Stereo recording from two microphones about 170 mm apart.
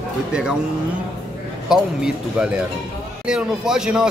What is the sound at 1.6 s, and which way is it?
Speech, 5° right (ahead or behind).